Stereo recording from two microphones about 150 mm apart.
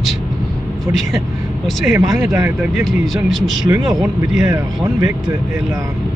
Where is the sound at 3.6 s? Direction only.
25° right (ahead or behind).